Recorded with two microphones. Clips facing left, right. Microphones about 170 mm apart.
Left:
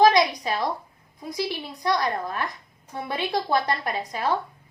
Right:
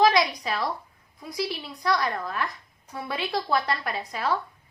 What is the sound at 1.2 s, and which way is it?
A woman's voice, 20° left (ahead or behind).